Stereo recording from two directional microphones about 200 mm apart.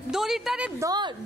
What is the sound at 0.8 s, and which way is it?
Speech, 20° right (ahead or behind).